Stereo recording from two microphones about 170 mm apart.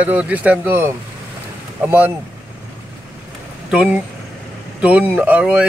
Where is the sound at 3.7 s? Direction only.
5° right (ahead or behind).